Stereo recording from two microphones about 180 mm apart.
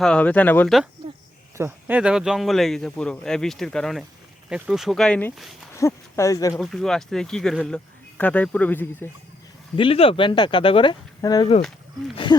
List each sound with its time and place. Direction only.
0.0 s speech: 5° left (ahead or behind)
1.5 s speech: 10° right (ahead or behind)
5.7 s speech: 15° left (ahead or behind)
6.5 s speech: centre (ahead or behind)
9.7 s speech: 30° left (ahead or behind)